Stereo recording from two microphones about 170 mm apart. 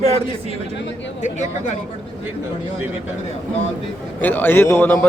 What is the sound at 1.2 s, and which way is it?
Speech, 45° left (ahead or behind).